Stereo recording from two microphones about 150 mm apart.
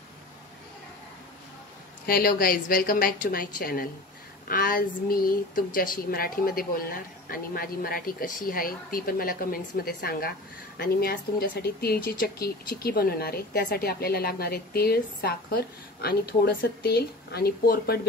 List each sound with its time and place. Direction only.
2.0 s speech: 80° left